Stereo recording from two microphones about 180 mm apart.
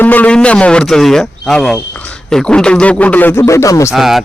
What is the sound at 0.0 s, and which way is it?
Speech, 10° left (ahead or behind).